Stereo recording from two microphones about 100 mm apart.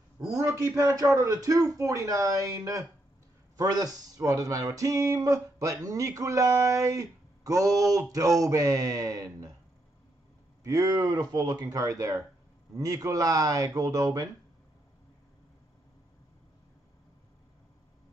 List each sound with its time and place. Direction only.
0.4 s speech: 30° right (ahead or behind)
10.6 s speech: 35° right (ahead or behind)